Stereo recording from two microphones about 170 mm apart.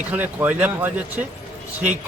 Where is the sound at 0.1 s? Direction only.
10° right (ahead or behind).